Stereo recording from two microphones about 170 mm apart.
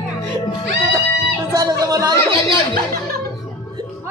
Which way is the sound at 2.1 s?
20° left (ahead or behind).